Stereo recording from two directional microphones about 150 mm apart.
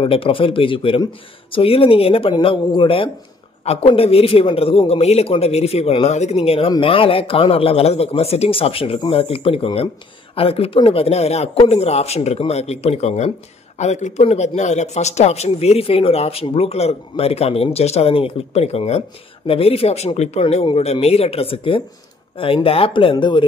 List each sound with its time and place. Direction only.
0.0 s speech: 35° left (ahead or behind)